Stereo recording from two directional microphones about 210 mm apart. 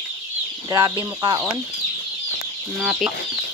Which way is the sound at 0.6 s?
15° right (ahead or behind).